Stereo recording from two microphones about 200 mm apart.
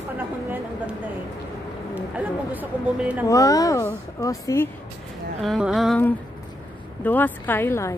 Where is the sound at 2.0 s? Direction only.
5° right (ahead or behind).